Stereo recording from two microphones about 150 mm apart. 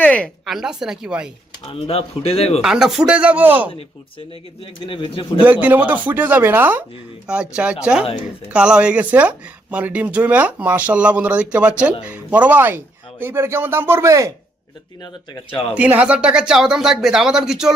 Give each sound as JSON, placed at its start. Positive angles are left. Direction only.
{"t": 0.0, "sound": "a sound", "side_deg": 10}
{"t": 0.5, "sound": "speech", "side_deg": -5}
{"t": 1.6, "sound": "speech", "side_deg": 40}
{"t": 2.6, "sound": "speech", "side_deg": -5}
{"t": 4.6, "sound": "speech", "side_deg": 35}
{"t": 5.4, "sound": "speech", "side_deg": -10}
{"t": 15.7, "sound": "speech", "side_deg": -10}